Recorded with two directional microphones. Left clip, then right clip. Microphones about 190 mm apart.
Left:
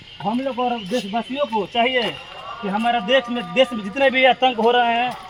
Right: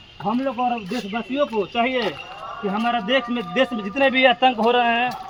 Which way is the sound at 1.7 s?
45° left (ahead or behind).